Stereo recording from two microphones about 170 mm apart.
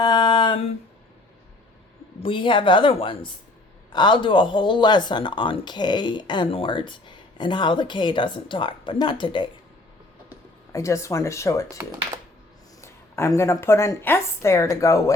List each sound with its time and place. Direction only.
0.0 s a sound: 25° left (ahead or behind)
2.2 s speech: 30° left (ahead or behind)
10.7 s a woman's voice: 15° left (ahead or behind)
11.8 s speech: 15° right (ahead or behind)
12.8 s a woman's voice: 15° left (ahead or behind)